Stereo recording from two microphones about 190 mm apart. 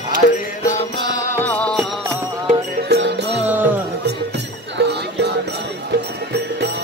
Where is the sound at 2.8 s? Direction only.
65° right (ahead or behind).